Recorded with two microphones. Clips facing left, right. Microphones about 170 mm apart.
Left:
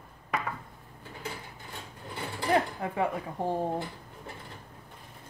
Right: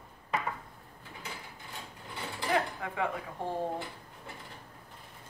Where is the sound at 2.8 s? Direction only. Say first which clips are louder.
Left 4 dB; 35° left (ahead or behind).